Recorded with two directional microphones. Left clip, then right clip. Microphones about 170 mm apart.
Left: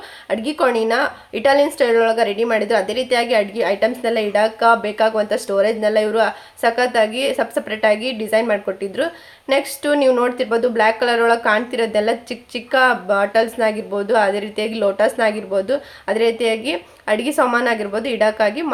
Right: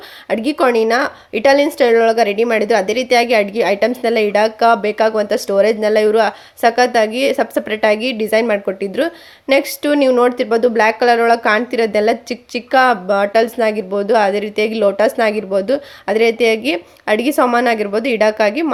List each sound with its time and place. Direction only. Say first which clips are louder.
0.3 s speech: right 3 dB; 40° right (ahead or behind)